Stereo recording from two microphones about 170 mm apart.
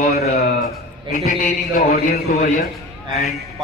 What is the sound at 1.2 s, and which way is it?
A man's voice, 55° left (ahead or behind).